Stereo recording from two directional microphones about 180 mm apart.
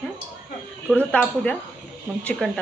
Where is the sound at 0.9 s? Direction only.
5° left (ahead or behind).